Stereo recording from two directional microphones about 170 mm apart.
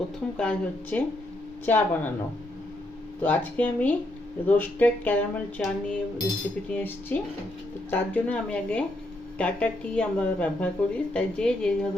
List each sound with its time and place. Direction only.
0.3 s speech: 10° left (ahead or behind)
3.2 s speech: 10° left (ahead or behind)